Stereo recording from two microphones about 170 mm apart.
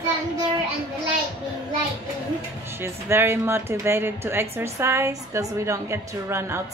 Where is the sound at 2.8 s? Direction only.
15° right (ahead or behind).